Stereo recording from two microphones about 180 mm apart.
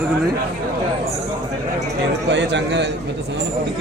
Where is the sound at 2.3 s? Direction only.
75° right (ahead or behind).